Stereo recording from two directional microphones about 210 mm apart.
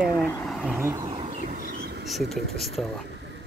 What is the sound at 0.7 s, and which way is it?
Vehicle, 10° right (ahead or behind).